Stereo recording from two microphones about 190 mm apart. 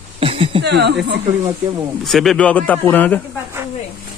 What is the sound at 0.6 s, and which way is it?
Speech, 60° right (ahead or behind).